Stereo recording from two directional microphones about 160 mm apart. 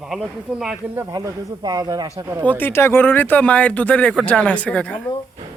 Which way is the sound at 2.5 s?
15° left (ahead or behind).